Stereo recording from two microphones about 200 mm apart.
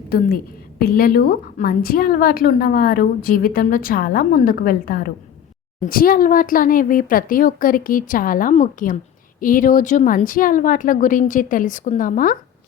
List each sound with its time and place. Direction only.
0.8 s a woman's voice: 50° left (ahead or behind)